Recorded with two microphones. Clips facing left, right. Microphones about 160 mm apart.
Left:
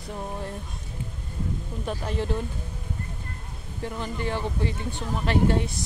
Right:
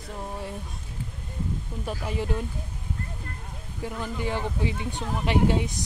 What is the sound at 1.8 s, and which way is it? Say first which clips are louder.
Speech: left 1 dB; 10° right (ahead or behind).